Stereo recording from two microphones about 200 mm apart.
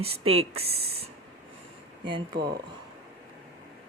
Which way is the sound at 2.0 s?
25° right (ahead or behind).